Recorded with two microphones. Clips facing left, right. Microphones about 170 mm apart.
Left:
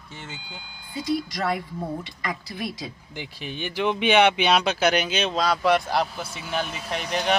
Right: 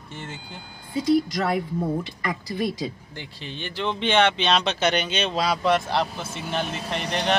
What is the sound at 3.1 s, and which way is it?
Speech, 15° left (ahead or behind).